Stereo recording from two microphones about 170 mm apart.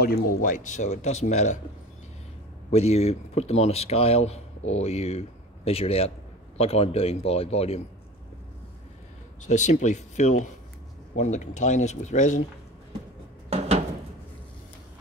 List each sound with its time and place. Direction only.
0.0 s speech: 55° left (ahead or behind)
2.7 s speech: 40° left (ahead or behind)
9.4 s speech: 45° left (ahead or behind)
13.5 s a sound: 40° right (ahead or behind)